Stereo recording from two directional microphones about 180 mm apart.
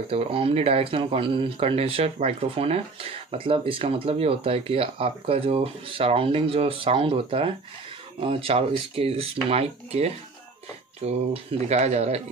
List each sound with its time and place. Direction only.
0.1 s speech: 30° right (ahead or behind)